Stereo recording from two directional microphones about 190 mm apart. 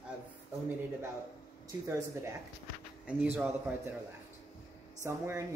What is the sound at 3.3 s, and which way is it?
Speech, 10° right (ahead or behind).